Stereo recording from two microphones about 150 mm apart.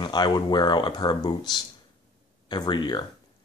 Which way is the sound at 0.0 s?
30° left (ahead or behind).